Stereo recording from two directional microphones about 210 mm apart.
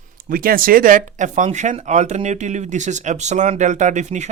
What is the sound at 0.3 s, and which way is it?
Speech, 45° right (ahead or behind).